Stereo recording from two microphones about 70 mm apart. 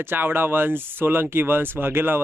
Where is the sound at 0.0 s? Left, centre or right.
Right.